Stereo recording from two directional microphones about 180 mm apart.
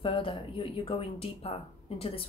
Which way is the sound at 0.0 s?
30° left (ahead or behind).